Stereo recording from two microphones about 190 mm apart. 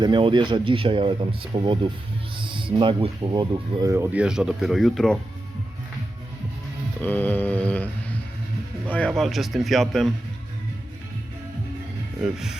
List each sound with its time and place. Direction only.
0.0 s speech: 25° right (ahead or behind); by 5.2 s centre (ahead or behind)
7.0 s a sound: 10° left (ahead or behind)
8.9 s speech: 5° left (ahead or behind)
12.2 s speech: centre (ahead or behind)